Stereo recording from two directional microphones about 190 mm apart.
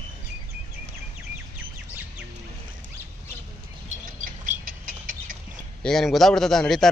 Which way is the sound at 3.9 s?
45° right (ahead or behind).